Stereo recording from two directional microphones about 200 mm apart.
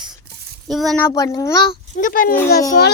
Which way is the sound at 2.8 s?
55° left (ahead or behind).